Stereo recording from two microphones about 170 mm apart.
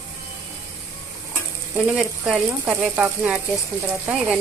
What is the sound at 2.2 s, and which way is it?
Speech, 5° right (ahead or behind).